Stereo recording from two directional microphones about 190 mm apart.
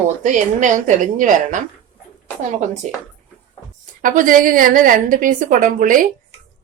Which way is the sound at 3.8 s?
45° right (ahead or behind).